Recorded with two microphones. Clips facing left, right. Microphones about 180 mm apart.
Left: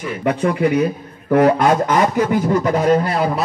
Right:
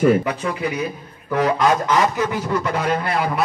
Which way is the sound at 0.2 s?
55° left (ahead or behind).